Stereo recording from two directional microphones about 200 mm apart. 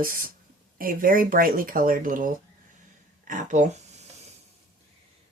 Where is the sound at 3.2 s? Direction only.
40° right (ahead or behind).